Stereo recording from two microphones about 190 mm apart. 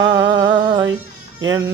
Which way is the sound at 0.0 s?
20° right (ahead or behind).